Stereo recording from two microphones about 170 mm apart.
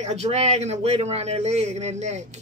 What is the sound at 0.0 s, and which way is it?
A woman's voice, 40° right (ahead or behind).